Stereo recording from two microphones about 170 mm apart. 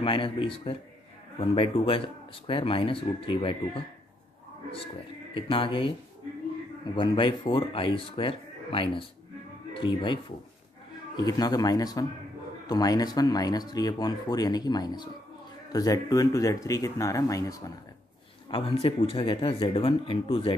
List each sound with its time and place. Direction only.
0.0 s speech: 30° left (ahead or behind)
5.3 s speech: 30° left (ahead or behind)
7.0 s speech: 30° left (ahead or behind)
18.5 s speech: 30° left (ahead or behind)